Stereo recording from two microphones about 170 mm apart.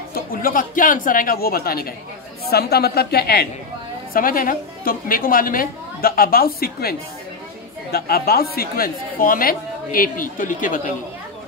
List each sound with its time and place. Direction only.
0.1 s a woman's voice: 55° left (ahead or behind)
4.1 s speech: 55° left (ahead or behind)